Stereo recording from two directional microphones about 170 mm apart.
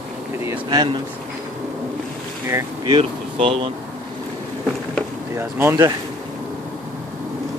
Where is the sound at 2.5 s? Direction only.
30° right (ahead or behind).